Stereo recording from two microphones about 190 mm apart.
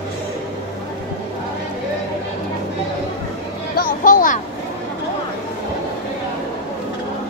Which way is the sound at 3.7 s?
45° left (ahead or behind).